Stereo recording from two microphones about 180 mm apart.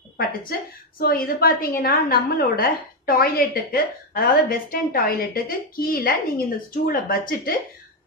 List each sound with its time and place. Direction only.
0.5 s a woman's voice: 55° left (ahead or behind)